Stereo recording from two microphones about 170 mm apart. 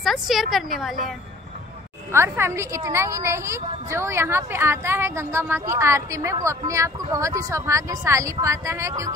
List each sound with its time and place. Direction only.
0.0 s a woman's voice: centre (ahead or behind)
2.1 s a woman's voice: 15° right (ahead or behind)